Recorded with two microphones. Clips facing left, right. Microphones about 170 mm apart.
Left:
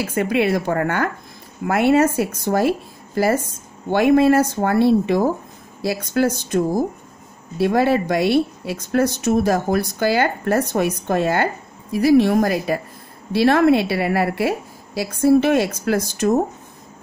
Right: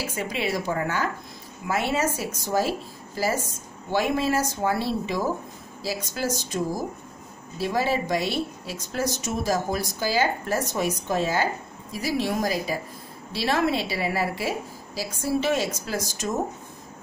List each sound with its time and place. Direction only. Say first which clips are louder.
0.0 s speech: left 9 dB; 60° left (ahead or behind)